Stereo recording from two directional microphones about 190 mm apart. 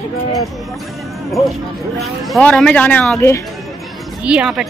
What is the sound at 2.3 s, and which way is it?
Speech, 5° left (ahead or behind).